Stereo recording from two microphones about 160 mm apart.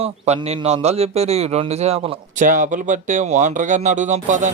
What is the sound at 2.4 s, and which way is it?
A man's voice, 55° right (ahead or behind).